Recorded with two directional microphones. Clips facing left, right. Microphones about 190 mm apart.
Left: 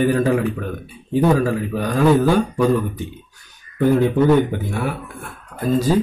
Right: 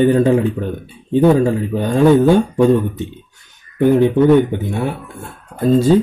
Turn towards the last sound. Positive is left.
turn(degrees=-25)  # may be behind; listen again after turning